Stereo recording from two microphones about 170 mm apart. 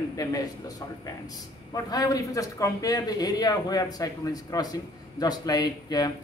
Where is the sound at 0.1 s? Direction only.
20° left (ahead or behind).